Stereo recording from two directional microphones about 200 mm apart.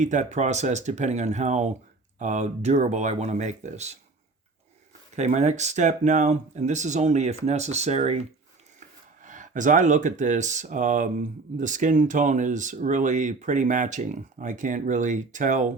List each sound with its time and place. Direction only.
0.0 s speech: 40° right (ahead or behind)
5.1 s speech: 35° right (ahead or behind)
9.2 s speech: 40° right (ahead or behind)